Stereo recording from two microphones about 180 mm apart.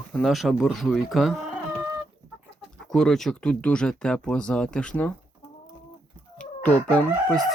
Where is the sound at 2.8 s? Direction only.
5° left (ahead or behind).